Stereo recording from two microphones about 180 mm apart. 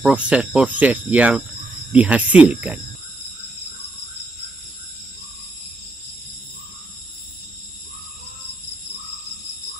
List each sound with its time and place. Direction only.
0.0 s speech: 5° right (ahead or behind)